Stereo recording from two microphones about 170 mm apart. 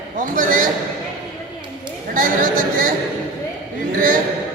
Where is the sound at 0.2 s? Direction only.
50° right (ahead or behind).